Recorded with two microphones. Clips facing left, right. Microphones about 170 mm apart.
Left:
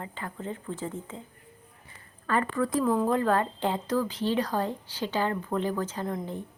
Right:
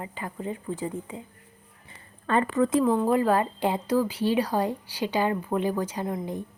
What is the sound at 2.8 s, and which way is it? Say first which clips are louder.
Speech: right 3 dB; 5° right (ahead or behind).